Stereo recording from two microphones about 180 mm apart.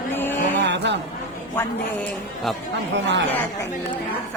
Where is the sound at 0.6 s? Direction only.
70° right (ahead or behind).